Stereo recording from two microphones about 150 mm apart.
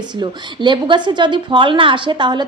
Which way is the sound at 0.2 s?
30° right (ahead or behind).